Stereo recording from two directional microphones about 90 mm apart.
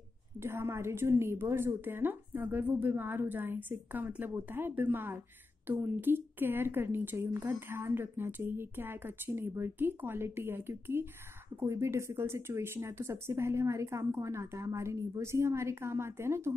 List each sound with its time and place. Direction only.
0.4 s a woman's voice: 30° right (ahead or behind)